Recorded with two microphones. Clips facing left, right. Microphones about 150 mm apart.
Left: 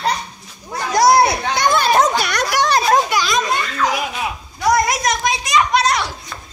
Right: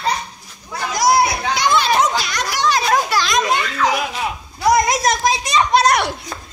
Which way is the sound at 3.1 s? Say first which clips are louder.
Even; 20° left (ahead or behind).